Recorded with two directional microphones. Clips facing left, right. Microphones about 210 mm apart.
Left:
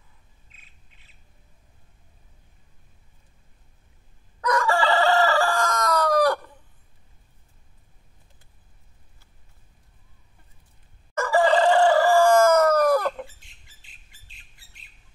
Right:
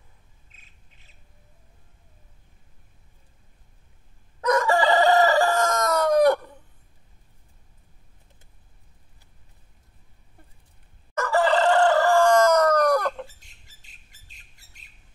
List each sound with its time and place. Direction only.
0.5 s squawk: 45° right (ahead or behind)
4.4 s chicken: 25° right (ahead or behind)
11.1 s chicken: 10° left (ahead or behind)